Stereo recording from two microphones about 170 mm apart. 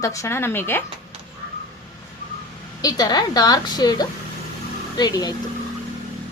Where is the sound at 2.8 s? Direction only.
20° left (ahead or behind).